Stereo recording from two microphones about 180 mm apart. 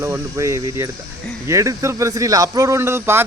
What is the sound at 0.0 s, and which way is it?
Speech, 15° right (ahead or behind).